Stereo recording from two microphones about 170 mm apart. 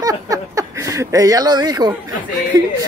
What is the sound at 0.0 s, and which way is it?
Speech, 20° right (ahead or behind).